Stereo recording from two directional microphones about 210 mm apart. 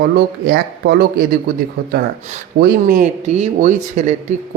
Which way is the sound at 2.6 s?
40° right (ahead or behind).